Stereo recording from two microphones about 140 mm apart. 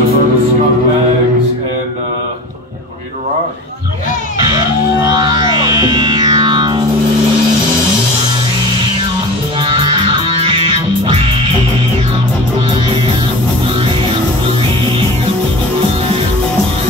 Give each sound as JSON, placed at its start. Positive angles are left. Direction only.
{"t": 4.5, "sound": "music", "side_deg": -25}
{"t": 9.6, "sound": "music", "side_deg": -40}